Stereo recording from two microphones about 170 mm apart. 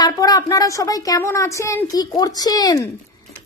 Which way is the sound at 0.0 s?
20° left (ahead or behind).